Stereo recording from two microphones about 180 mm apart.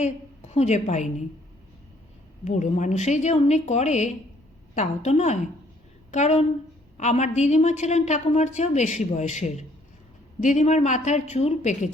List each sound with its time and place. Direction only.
0.0 s a woman's voice: 40° left (ahead or behind)
2.4 s a woman's voice: 40° left (ahead or behind)